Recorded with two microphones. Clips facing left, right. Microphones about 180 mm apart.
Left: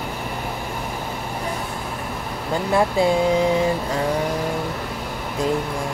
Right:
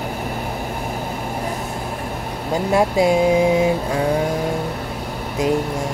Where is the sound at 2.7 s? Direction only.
15° right (ahead or behind).